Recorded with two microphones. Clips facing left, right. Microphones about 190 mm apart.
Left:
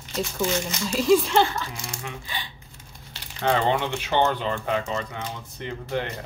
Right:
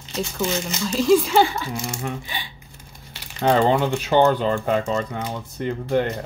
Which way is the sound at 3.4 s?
40° right (ahead or behind).